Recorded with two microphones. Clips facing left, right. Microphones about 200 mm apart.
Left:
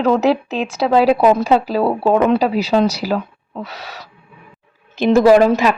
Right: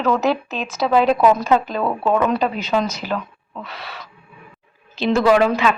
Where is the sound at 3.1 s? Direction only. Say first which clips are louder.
Left 5 dB; 35° left (ahead or behind).